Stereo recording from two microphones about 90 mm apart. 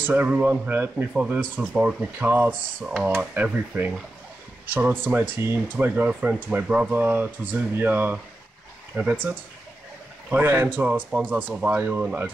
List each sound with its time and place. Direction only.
0.0 s speech: 20° right (ahead or behind)
10.8 s speech: 15° right (ahead or behind)